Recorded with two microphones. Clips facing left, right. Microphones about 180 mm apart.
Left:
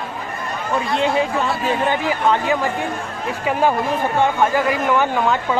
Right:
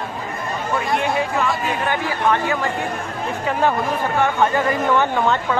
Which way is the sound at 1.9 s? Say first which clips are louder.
Even; 20° left (ahead or behind).